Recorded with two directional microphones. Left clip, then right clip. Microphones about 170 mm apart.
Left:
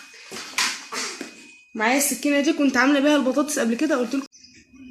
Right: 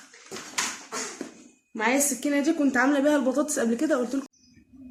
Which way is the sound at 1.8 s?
35° left (ahead or behind).